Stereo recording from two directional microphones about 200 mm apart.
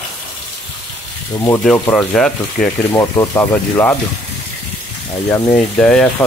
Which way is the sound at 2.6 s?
45° left (ahead or behind).